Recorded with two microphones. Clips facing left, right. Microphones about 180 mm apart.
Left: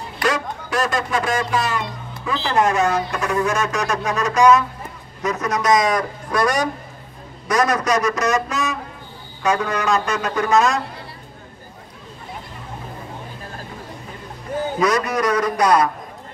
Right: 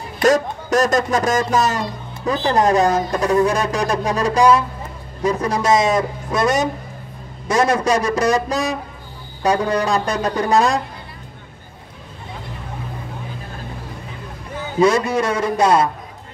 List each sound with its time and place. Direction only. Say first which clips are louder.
0.2 s a man's voice: right 7 dB; 40° right (ahead or behind)
14.8 s a man's voice: right 5 dB; 25° right (ahead or behind)